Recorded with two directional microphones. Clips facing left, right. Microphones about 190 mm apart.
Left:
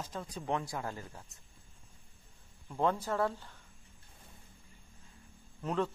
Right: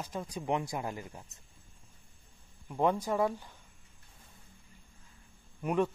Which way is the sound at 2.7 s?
15° right (ahead or behind).